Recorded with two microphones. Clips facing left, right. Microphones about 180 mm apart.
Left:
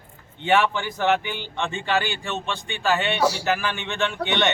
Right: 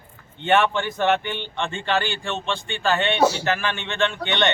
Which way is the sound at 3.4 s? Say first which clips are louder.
Even; 10° left (ahead or behind).